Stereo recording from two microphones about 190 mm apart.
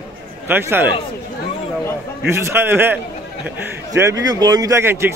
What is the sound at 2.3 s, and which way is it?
A man's voice, 10° right (ahead or behind).